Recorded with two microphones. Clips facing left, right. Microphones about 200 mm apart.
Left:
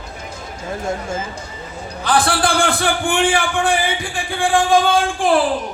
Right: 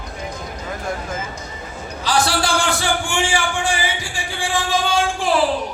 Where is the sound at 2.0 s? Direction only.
55° left (ahead or behind).